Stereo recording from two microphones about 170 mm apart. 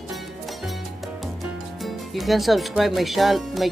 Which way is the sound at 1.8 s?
Centre (ahead or behind).